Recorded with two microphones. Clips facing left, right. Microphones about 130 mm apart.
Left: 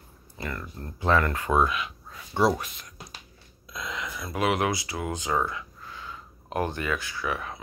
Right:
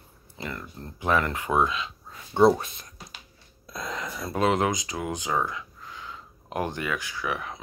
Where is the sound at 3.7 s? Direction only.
45° right (ahead or behind).